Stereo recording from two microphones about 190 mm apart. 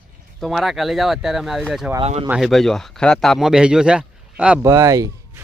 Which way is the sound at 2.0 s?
35° right (ahead or behind).